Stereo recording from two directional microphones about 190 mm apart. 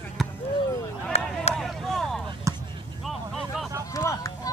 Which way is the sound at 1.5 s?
Centre (ahead or behind).